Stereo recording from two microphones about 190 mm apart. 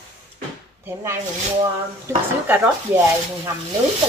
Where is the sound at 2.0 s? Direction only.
10° right (ahead or behind).